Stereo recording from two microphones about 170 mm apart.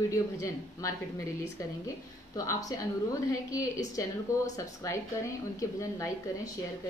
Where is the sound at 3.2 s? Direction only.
20° left (ahead or behind).